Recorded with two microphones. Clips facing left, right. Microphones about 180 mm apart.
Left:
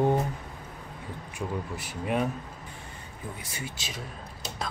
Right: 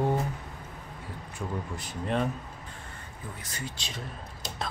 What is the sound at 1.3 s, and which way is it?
Speech, 10° left (ahead or behind).